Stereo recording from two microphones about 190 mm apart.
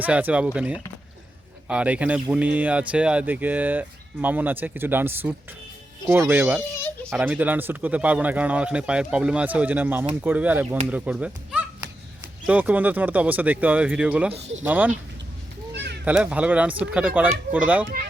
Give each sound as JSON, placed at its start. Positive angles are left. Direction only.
{"t": 0.0, "sound": "speech", "side_deg": -10}
{"t": 7.0, "sound": "a sound", "side_deg": 0}
{"t": 7.3, "sound": "speech", "side_deg": -10}
{"t": 14.3, "sound": "speech", "side_deg": -35}
{"t": 14.6, "sound": "speech", "side_deg": -10}
{"t": 15.7, "sound": "a sound", "side_deg": -65}
{"t": 16.0, "sound": "speech", "side_deg": -5}